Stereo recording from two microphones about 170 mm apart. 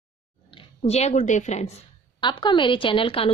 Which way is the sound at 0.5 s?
35° left (ahead or behind).